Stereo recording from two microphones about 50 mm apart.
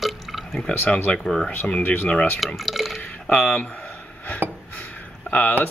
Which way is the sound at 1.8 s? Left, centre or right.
Left.